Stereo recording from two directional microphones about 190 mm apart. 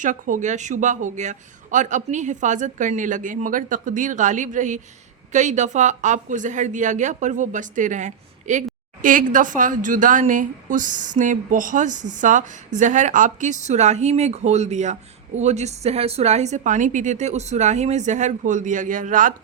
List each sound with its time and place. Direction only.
0.0 s a woman's voice: 40° right (ahead or behind)